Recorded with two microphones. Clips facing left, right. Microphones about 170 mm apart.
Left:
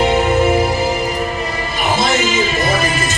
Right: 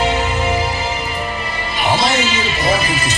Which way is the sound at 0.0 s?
55° left (ahead or behind).